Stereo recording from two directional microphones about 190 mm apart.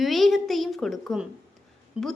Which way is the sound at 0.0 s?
Centre (ahead or behind).